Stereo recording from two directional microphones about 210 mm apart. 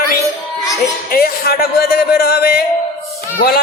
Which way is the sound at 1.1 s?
45° left (ahead or behind).